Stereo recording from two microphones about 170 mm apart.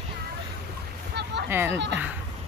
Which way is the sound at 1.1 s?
80° right.